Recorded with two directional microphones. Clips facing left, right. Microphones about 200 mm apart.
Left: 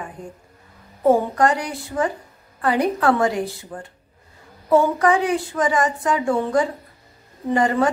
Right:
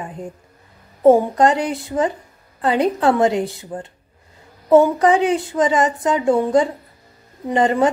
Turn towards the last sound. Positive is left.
turn(degrees=-20)  # may be behind; listen again after turning